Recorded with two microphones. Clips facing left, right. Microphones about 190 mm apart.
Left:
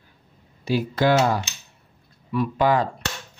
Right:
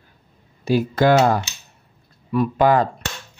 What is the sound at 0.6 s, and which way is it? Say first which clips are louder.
Speech: right 4 dB; 50° right (ahead or behind).